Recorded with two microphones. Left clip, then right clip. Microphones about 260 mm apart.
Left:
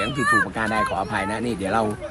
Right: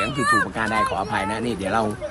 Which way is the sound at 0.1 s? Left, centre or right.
Right.